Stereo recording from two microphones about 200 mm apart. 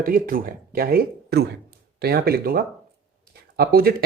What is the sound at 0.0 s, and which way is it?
Speech, 45° right (ahead or behind).